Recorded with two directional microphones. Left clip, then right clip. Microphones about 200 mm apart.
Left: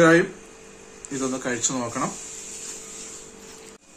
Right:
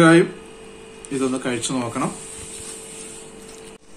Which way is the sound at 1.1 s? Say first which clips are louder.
Right 4 dB; 25° left (ahead or behind).